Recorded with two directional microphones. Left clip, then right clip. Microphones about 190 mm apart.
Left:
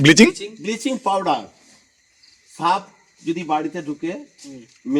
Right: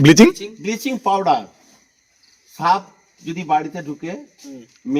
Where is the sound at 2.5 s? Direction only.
20° right (ahead or behind).